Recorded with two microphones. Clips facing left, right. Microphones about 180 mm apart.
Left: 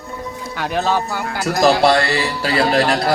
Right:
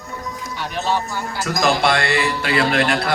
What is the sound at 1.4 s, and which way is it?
Speech, 35° left (ahead or behind).